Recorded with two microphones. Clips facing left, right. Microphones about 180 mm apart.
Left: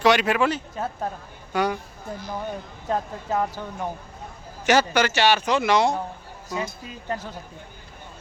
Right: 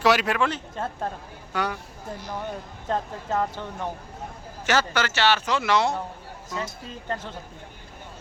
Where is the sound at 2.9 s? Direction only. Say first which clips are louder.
Left 1 dB; 10° left (ahead or behind).